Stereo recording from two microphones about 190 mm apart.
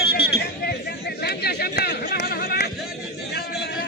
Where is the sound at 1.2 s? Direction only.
55° left (ahead or behind).